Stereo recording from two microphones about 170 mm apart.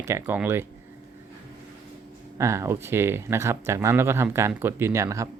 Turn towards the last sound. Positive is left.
turn(degrees=-15)  # may be behind; listen again after turning